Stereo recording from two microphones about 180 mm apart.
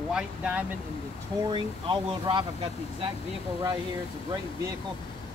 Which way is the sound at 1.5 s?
25° right (ahead or behind).